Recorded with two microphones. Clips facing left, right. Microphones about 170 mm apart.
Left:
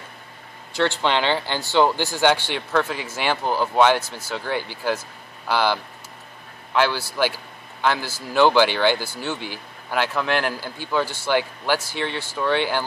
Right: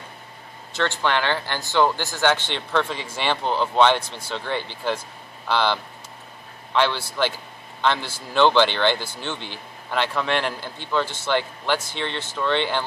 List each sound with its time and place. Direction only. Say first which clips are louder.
1.0 s a man's voice: left 2 dB; 15° left (ahead or behind)